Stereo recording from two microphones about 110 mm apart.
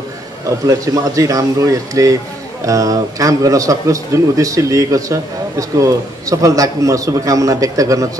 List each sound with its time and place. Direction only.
0.5 s a man's voice: 30° right (ahead or behind)